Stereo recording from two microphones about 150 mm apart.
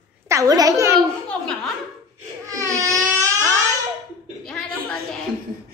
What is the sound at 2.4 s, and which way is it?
Baby cry, 20° right (ahead or behind).